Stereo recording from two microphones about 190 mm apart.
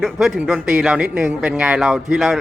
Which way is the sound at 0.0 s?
Centre (ahead or behind).